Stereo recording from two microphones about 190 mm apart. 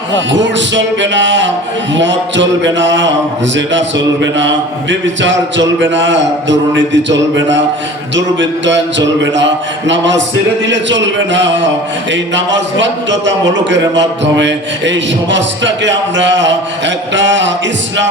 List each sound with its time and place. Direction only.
0.1 s a man's voice: 70° right (ahead or behind)